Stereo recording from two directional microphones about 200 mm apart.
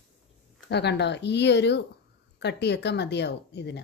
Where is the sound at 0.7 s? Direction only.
55° left (ahead or behind).